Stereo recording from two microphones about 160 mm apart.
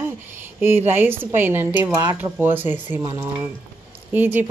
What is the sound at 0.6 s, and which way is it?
Speech, 15° right (ahead or behind).